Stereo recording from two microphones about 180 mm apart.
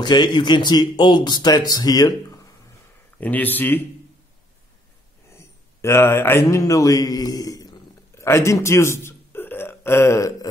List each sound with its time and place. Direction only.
0.0 s speech: 25° left (ahead or behind)
3.2 s speech: 10° left (ahead or behind)
5.4 s mantra: 15° left (ahead or behind)